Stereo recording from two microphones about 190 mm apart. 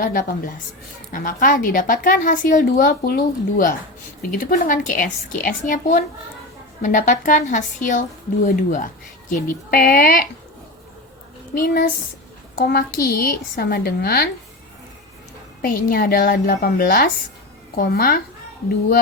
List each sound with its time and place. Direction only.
0.0 s a woman's voice: 45° left (ahead or behind)
11.5 s a woman's voice: 55° left (ahead or behind)
15.6 s a woman's voice: 50° left (ahead or behind)